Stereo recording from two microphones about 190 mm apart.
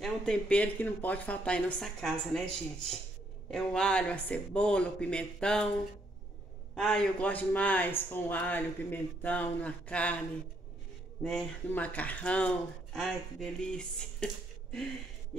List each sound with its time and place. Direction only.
0.0 s speech: 5° left (ahead or behind)
6.7 s a man's voice: 5° left (ahead or behind)
11.2 s speech: 5° left (ahead or behind)